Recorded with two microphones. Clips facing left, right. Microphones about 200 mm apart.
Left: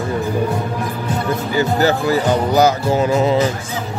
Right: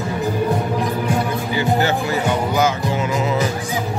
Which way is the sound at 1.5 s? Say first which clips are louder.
Left 3 dB; 35° left (ahead or behind).